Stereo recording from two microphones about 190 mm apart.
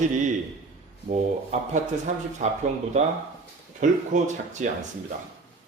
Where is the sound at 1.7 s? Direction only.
40° right (ahead or behind).